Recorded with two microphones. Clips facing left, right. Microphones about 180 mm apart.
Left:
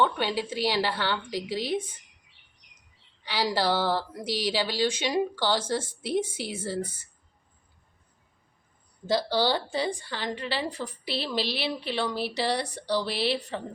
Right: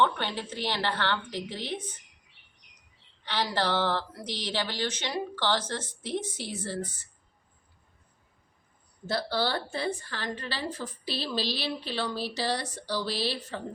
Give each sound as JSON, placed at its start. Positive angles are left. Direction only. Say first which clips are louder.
{"t": 0.0, "sound": "speech", "louder": "left 2 dB", "side_deg": 10}
{"t": 3.2, "sound": "speech", "louder": "left 3 dB", "side_deg": 10}
{"t": 9.0, "sound": "speech", "louder": "left 4 dB", "side_deg": 15}
{"t": 10.5, "sound": "a woman's voice", "louder": "left 3 dB", "side_deg": 65}